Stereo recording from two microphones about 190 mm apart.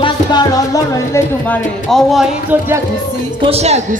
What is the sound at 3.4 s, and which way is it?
Speech, 35° right (ahead or behind).